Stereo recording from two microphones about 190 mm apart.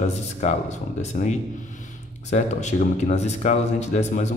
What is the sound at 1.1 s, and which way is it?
Speech, 40° left (ahead or behind).